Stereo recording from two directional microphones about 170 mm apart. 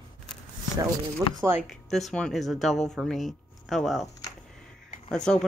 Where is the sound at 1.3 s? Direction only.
15° right (ahead or behind).